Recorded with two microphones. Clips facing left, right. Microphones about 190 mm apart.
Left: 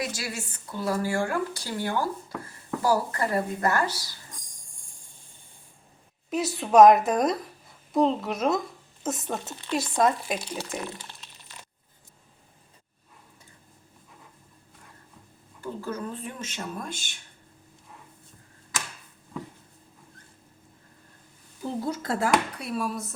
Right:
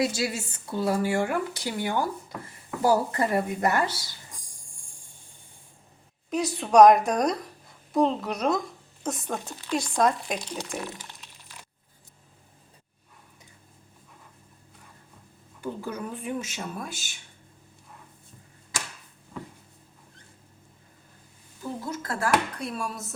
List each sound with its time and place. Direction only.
0.0 s speech: 25° right (ahead or behind)
6.3 s speech: centre (ahead or behind)
10.8 s crack: 15° right (ahead or behind)
15.6 s speech: 15° right (ahead or behind)
21.8 s speech: 25° left (ahead or behind)
22.5 s speech: 5° left (ahead or behind)